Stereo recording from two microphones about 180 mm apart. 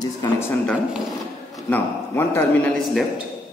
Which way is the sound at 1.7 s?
10° left (ahead or behind).